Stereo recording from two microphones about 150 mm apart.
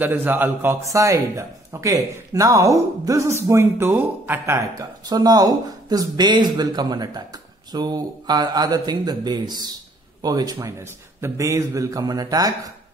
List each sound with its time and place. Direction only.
0.0 s a man's voice: 15° right (ahead or behind)